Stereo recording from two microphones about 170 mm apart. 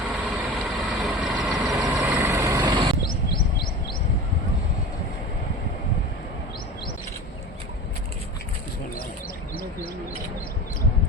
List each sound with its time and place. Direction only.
0.1 s vehicle: centre (ahead or behind)
1.6 s vehicle: 20° right (ahead or behind)
1.9 s vehicle: 5° right (ahead or behind); by 2.9 s 25° right (ahead or behind)